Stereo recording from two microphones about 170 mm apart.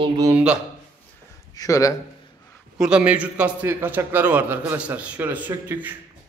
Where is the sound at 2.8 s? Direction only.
5° right (ahead or behind).